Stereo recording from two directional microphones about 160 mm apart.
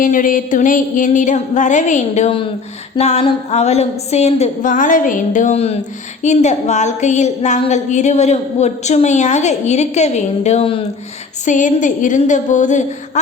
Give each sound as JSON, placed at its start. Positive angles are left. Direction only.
{"t": 0.0, "sound": "a woman's voice", "side_deg": 55}
{"t": 11.4, "sound": "a woman's voice", "side_deg": 50}